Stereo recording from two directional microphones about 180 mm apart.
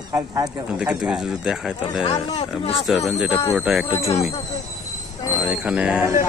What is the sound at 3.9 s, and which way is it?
Speech, 35° left (ahead or behind).